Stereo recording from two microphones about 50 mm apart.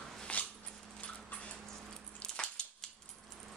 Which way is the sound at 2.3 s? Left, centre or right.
Centre.